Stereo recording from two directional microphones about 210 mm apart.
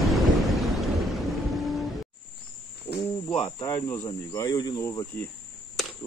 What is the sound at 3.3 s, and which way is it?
Speech, 20° left (ahead or behind).